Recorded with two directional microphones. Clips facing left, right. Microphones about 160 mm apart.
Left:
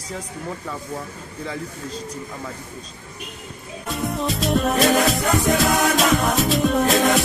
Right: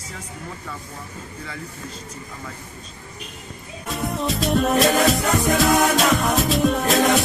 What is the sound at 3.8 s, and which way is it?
Music, centre (ahead or behind).